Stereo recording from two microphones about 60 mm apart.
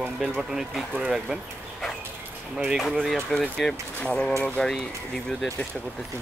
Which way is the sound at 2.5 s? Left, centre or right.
Centre.